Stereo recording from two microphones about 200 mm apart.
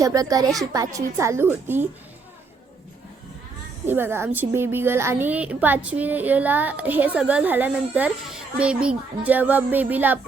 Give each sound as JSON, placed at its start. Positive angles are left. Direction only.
{"t": 0.0, "sound": "a woman's voice", "side_deg": -15}
{"t": 3.8, "sound": "a woman's voice", "side_deg": -10}